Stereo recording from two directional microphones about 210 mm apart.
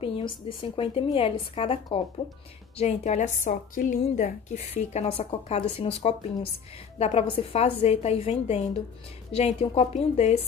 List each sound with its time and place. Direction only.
0.0 s a woman's voice: 25° left (ahead or behind)